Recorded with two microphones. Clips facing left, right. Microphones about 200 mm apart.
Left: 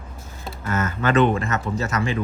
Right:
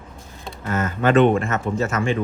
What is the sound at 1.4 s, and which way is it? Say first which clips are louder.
Speech: right 2 dB; 40° left (ahead or behind).